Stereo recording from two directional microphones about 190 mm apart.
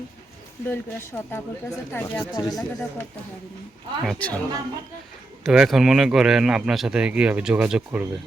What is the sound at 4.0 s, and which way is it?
Speech, 5° left (ahead or behind).